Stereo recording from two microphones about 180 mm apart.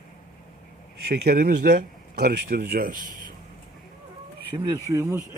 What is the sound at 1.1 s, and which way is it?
Speech, 60° right (ahead or behind).